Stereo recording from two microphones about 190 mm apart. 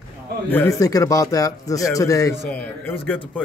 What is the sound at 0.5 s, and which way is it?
Speech, 15° left (ahead or behind).